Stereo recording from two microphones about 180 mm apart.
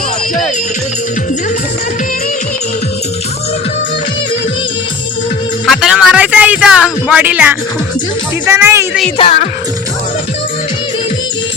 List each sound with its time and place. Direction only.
5.6 s speech: centre (ahead or behind)
9.1 s speech: 30° left (ahead or behind)